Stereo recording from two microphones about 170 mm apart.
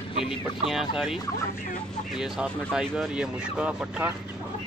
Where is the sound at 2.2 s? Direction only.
5° right (ahead or behind).